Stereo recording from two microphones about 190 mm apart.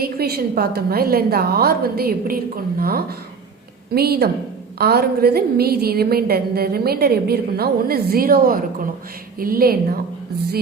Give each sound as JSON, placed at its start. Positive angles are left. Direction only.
{"t": 0.0, "sound": "a woman's voice", "side_deg": -55}